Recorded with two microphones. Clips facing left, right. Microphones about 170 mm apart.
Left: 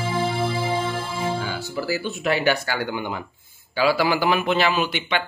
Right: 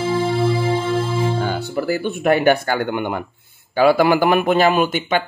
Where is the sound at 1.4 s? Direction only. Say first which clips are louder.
Right 6 dB; 55° right (ahead or behind).